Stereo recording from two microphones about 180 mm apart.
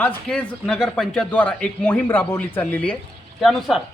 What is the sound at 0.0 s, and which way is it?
A man's voice, 5° left (ahead or behind).